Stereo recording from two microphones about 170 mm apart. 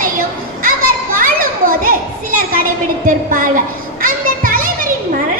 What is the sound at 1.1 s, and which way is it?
Children playing, 55° right (ahead or behind).